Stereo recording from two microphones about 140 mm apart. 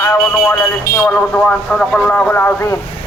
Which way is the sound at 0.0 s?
15° left (ahead or behind).